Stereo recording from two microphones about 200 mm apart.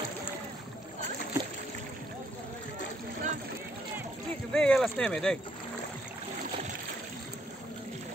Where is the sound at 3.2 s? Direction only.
40° right (ahead or behind).